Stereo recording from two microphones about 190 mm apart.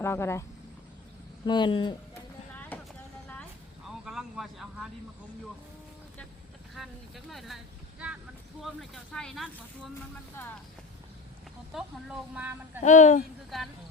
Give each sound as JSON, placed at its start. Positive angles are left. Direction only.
{"t": 0.0, "sound": "speech", "side_deg": 15}
{"t": 1.5, "sound": "speech", "side_deg": 25}
{"t": 2.7, "sound": "vehicle", "side_deg": 10}
{"t": 4.0, "sound": "a sound", "side_deg": 0}
{"t": 6.7, "sound": "a sound", "side_deg": 0}
{"t": 8.6, "sound": "speech", "side_deg": 0}
{"t": 11.7, "sound": "speech", "side_deg": -5}
{"t": 12.8, "sound": "speech", "side_deg": 40}
{"t": 13.5, "sound": "speech", "side_deg": 0}